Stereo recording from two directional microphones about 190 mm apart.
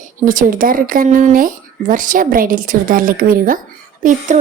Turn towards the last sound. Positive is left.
turn(degrees=-45)  # may be behind; listen again after turning